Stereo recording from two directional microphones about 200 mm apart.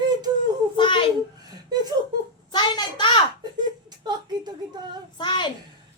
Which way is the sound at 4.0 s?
20° right (ahead or behind).